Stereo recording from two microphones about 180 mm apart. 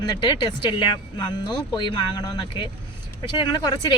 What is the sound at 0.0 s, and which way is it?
Speech, 25° left (ahead or behind).